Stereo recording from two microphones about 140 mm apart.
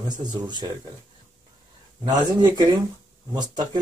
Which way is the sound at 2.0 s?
30° right (ahead or behind).